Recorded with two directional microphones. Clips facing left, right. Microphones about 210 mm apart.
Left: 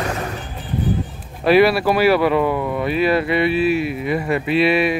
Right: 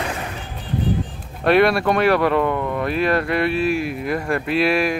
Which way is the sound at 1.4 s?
5° left (ahead or behind).